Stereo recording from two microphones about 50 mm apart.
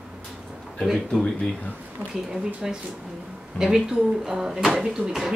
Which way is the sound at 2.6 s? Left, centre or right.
Centre.